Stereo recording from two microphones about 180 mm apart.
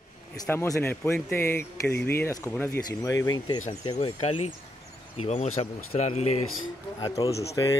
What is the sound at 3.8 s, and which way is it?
Speech, 30° left (ahead or behind).